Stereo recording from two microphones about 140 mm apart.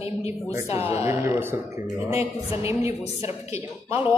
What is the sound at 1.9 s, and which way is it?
Speech, 45° left (ahead or behind).